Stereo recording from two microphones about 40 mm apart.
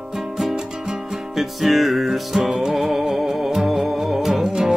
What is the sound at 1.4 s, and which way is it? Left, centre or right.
Music, centre.